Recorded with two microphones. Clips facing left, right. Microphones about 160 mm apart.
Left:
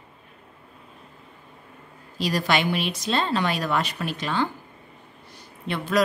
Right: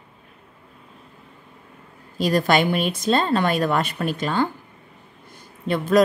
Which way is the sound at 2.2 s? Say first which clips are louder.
Right 5 dB; 50° right (ahead or behind).